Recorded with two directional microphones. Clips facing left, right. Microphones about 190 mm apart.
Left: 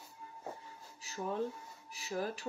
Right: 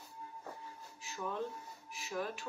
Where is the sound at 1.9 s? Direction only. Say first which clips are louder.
Left 2 dB; 35° left (ahead or behind).